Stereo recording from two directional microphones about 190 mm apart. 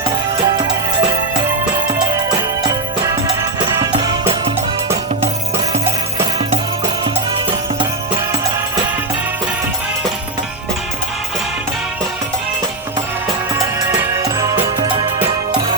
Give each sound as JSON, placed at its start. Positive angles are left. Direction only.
{"t": 0.0, "sound": "music", "side_deg": -25}
{"t": 3.9, "sound": "music", "side_deg": -25}
{"t": 13.5, "sound": "music", "side_deg": -15}